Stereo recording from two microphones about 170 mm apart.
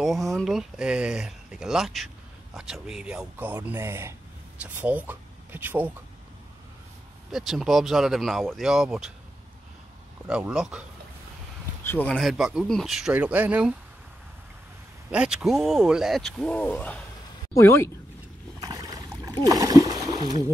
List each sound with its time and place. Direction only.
0.0 s speech: centre (ahead or behind)
7.2 s speech: centre (ahead or behind)
10.2 s speech: 5° right (ahead or behind)
11.8 s speech: 10° left (ahead or behind); by 13.7 s 5° right (ahead or behind)
15.0 s speech: 5° right (ahead or behind); by 17.9 s 15° left (ahead or behind)
18.6 s boat: 20° right (ahead or behind)
19.4 s splash: 20° right (ahead or behind)